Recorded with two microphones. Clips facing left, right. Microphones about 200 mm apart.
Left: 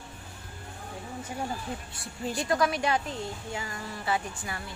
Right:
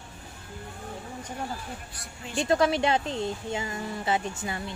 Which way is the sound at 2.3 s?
25° right (ahead or behind).